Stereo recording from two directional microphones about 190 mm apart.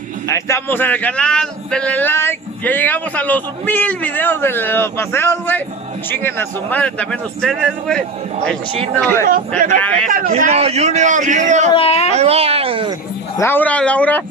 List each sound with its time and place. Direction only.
0.3 s speech: 10° left (ahead or behind)
9.6 s a man's voice: 45° right (ahead or behind)
11.7 s speech: 30° left (ahead or behind)
12.1 s a man's voice: 35° right (ahead or behind)
13.4 s speech: 10° left (ahead or behind)